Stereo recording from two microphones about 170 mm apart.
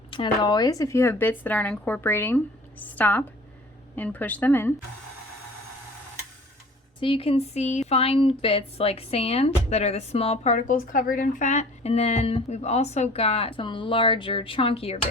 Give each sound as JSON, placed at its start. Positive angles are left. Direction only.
{"t": 0.1, "sound": "speech", "side_deg": 25}
{"t": 7.0, "sound": "speech", "side_deg": 30}